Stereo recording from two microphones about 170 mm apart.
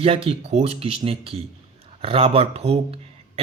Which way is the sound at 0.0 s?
35° right (ahead or behind).